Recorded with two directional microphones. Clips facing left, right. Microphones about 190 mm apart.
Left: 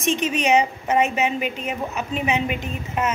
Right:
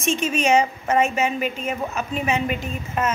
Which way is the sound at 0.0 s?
15° left (ahead or behind).